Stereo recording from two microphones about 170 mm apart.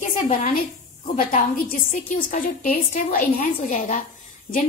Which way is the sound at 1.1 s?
55° left (ahead or behind).